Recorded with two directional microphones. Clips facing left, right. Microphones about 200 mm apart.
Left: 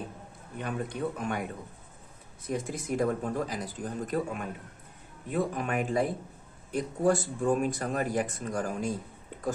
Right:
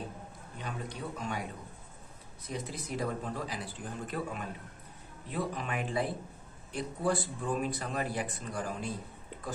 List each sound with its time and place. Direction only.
0.6 s a man's voice: 55° left (ahead or behind)